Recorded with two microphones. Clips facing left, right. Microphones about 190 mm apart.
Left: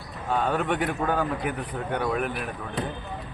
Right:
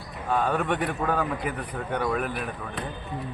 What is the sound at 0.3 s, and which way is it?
A man's voice, 5° left (ahead or behind).